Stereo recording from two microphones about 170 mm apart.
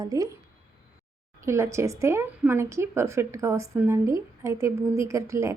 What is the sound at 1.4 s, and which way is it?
Speech, 15° right (ahead or behind).